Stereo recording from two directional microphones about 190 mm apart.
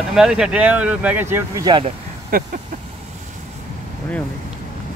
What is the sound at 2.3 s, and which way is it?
Speech, 50° right (ahead or behind).